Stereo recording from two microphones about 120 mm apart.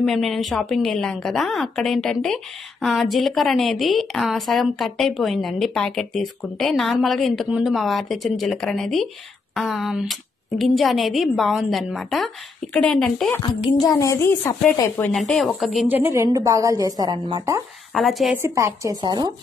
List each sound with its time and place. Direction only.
0.0 s a woman's voice: centre (ahead or behind)
13.4 s speech: 35° left (ahead or behind); by 15.1 s 15° left (ahead or behind)
15.1 s a woman's voice: 5° left (ahead or behind)
15.9 s a woman's voice: 20° right (ahead or behind)
17.9 s a woman's voice: centre (ahead or behind)
18.3 s a woman's voice: 25° right (ahead or behind)
18.9 s speech: 40° right (ahead or behind)